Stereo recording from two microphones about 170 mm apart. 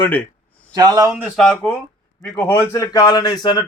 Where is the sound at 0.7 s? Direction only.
20° right (ahead or behind).